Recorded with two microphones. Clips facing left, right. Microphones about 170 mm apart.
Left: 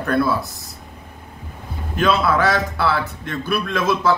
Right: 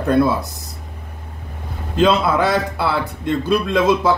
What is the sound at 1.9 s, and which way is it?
A man's voice, 20° right (ahead or behind).